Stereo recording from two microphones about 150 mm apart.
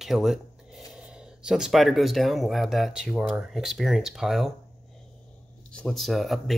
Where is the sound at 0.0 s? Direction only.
Centre (ahead or behind).